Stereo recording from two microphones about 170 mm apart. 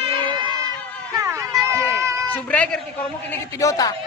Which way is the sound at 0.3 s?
25° right (ahead or behind).